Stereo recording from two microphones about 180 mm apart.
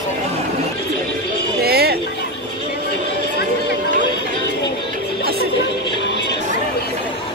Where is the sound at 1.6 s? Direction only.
60° right (ahead or behind).